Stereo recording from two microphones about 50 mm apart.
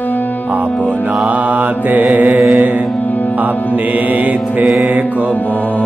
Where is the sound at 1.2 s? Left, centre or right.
Right.